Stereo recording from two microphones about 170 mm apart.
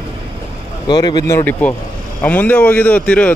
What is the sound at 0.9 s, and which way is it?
Speech, 25° left (ahead or behind).